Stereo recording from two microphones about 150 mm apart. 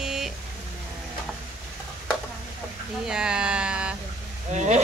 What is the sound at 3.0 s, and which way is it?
Speech, 5° right (ahead or behind).